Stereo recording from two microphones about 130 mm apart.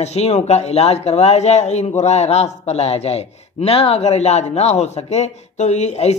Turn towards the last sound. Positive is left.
turn(degrees=60)  # may be behind; listen again after turning